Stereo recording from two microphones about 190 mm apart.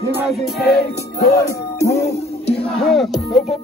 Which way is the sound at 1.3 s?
15° left (ahead or behind).